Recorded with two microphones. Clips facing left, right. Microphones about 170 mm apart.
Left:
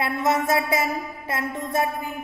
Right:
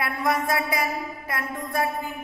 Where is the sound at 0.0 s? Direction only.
25° left (ahead or behind).